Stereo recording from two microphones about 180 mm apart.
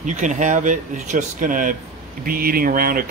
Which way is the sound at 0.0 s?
45° right (ahead or behind).